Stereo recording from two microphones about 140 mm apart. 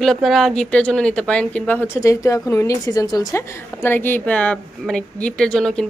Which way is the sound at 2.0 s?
25° left (ahead or behind).